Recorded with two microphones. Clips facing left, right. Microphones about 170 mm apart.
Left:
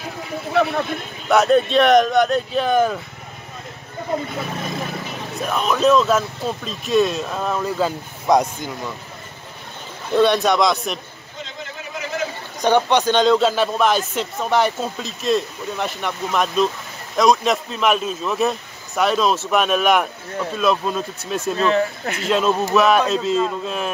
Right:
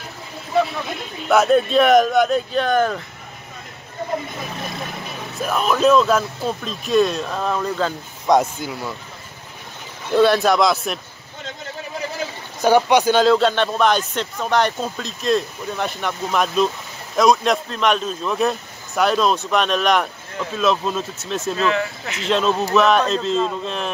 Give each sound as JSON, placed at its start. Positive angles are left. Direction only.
{"t": 0.5, "sound": "speech", "side_deg": 60}
{"t": 1.3, "sound": "a man's voice", "side_deg": 0}
{"t": 5.4, "sound": "a man's voice", "side_deg": 0}
{"t": 8.4, "sound": "a man's voice", "side_deg": -5}
{"t": 10.1, "sound": "a man's voice", "side_deg": 0}
{"t": 12.6, "sound": "a man's voice", "side_deg": -10}
{"t": 21.5, "sound": "speech", "side_deg": 35}
{"t": 22.2, "sound": "a man's voice", "side_deg": 5}